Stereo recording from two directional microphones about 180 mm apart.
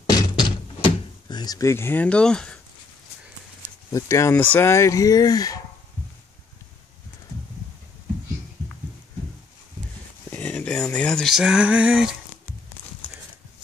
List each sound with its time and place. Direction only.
0.4 s door: 25° left (ahead or behind); by 2.6 s 5° left (ahead or behind)
3.9 s speech: 15° left (ahead or behind)
10.3 s speech: 5° left (ahead or behind)